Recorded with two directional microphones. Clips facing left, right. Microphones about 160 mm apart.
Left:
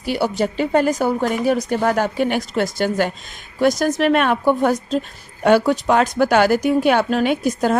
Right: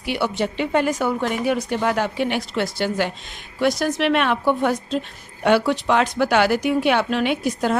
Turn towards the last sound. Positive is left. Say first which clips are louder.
# left 3 dB
turn(degrees=40)  # may be behind; listen again after turning